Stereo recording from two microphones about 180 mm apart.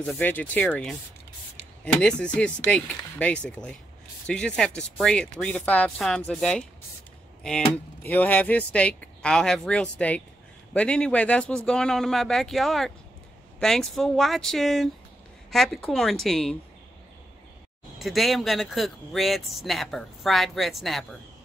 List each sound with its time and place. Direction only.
0.0 s speech: 10° left (ahead or behind)
2.0 s speech: 5° left (ahead or behind)
17.9 s speech: centre (ahead or behind)